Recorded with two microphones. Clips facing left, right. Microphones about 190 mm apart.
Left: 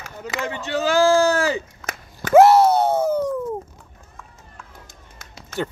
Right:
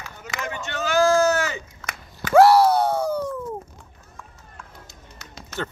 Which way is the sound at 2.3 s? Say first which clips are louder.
Left 2 dB; 20° left (ahead or behind).